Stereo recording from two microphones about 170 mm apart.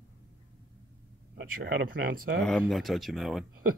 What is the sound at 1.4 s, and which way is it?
Speech, 55° right (ahead or behind).